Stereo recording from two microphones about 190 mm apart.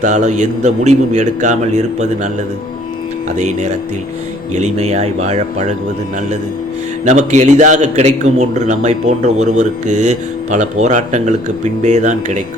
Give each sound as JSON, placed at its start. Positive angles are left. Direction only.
{"t": 0.0, "sound": "a man's voice", "side_deg": -40}
{"t": 3.3, "sound": "a man's voice", "side_deg": -35}
{"t": 7.0, "sound": "a man's voice", "side_deg": -40}